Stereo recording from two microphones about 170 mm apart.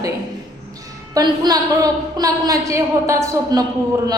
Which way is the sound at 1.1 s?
25° right (ahead or behind).